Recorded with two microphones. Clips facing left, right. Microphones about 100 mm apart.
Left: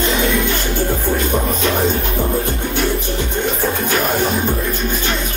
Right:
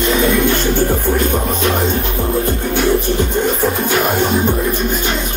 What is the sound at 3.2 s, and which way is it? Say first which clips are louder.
Music: right 4 dB; 40° right (ahead or behind).